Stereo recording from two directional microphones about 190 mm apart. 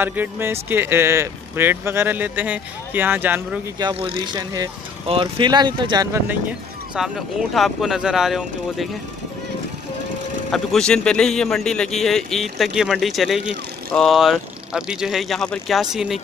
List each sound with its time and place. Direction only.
0.0 s speech: 10° right (ahead or behind)
3.8 s speech: 25° right (ahead or behind)
7.0 s a man's voice: centre (ahead or behind)
10.5 s a man's voice: 5° left (ahead or behind)